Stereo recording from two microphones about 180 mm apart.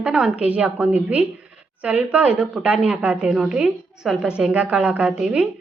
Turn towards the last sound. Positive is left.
turn(degrees=-5)  # may be behind; listen again after turning